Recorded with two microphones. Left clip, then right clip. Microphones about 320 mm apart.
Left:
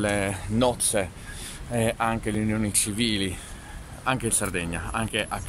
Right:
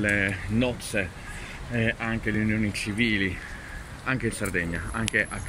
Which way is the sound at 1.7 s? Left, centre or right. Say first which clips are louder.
Left 3 dB; left.